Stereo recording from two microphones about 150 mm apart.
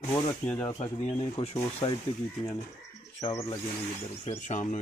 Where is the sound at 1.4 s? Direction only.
40° left (ahead or behind).